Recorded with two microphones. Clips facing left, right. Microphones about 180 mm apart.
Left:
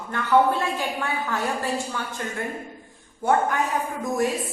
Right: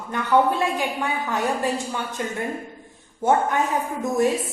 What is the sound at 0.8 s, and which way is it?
A woman's voice, 15° right (ahead or behind).